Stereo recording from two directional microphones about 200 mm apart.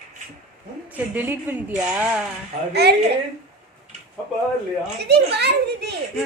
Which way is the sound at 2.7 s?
55° right (ahead or behind).